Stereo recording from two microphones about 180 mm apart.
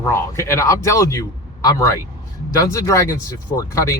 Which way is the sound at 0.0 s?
15° left (ahead or behind).